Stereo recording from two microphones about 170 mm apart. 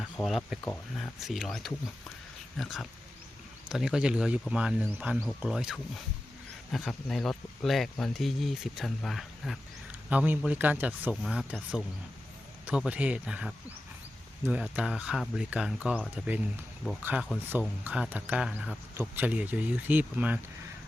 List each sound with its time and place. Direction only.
0.0 s speech: 5° left (ahead or behind)